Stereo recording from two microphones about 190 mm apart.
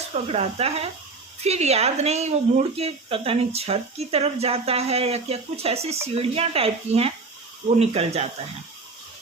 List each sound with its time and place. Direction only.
0.1 s speech: 35° right (ahead or behind)